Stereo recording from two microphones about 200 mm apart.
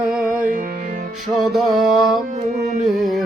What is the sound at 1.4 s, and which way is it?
Music, centre (ahead or behind).